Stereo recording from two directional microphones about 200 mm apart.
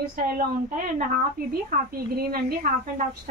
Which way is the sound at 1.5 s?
50° right (ahead or behind).